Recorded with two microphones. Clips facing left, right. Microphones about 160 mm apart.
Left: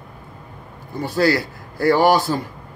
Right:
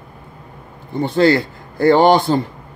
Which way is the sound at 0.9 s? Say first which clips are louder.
Right 5 dB; 25° right (ahead or behind).